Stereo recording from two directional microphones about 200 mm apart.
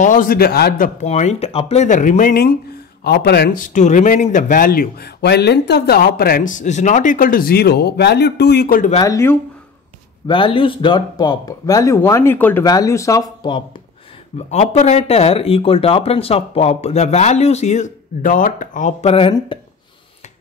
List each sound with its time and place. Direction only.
0.0 s speech: 40° left (ahead or behind)
8.9 s speech: 15° left (ahead or behind)
10.2 s speech: 25° left (ahead or behind)
14.5 s speech: 35° left (ahead or behind)